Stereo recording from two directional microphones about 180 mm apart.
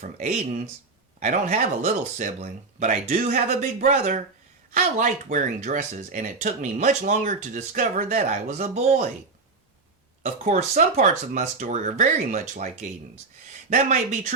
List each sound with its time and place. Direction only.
0.0 s speech: 45° right (ahead or behind)
10.2 s speech: 40° right (ahead or behind)